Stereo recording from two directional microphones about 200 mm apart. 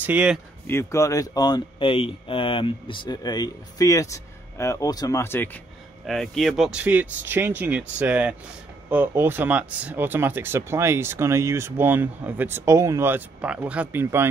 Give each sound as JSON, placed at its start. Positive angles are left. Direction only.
{"t": 0.0, "sound": "speech", "side_deg": -5}
{"t": 0.7, "sound": "speech", "side_deg": 15}